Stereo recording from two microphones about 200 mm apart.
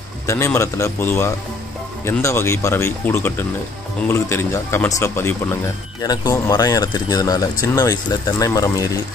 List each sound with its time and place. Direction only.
0.3 s speech: 15° left (ahead or behind)